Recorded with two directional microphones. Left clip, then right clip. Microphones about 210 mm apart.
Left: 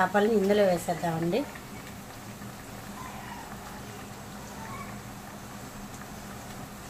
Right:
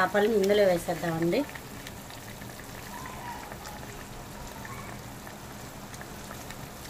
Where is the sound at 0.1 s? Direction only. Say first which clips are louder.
Even; 5° right (ahead or behind).